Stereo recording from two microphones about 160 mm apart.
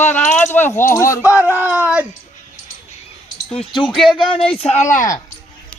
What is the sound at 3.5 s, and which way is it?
Speech, 35° left (ahead or behind).